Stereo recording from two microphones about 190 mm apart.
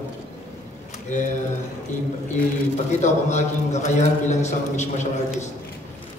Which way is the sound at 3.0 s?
35° left (ahead or behind).